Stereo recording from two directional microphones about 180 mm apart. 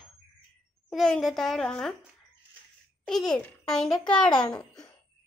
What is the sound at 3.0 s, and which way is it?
A child's voice, 5° left (ahead or behind).